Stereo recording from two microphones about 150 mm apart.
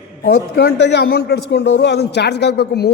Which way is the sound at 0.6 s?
90° left.